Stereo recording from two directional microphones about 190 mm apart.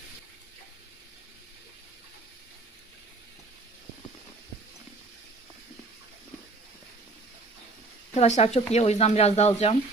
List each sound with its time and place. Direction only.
8.1 s speech: 35° left (ahead or behind)